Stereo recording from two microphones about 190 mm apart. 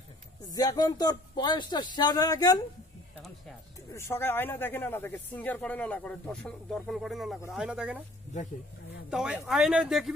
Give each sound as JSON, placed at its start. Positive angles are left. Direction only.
{"t": 0.5, "sound": "speech", "side_deg": 20}
{"t": 3.9, "sound": "speech", "side_deg": 10}
{"t": 9.1, "sound": "speech", "side_deg": -5}